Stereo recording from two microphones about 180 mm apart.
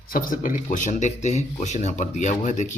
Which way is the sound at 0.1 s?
50° left (ahead or behind).